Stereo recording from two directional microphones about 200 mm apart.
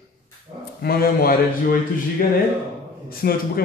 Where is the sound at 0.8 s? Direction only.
50° left (ahead or behind).